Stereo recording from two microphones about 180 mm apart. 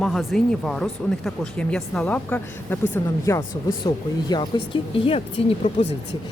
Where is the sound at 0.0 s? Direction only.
Centre (ahead or behind).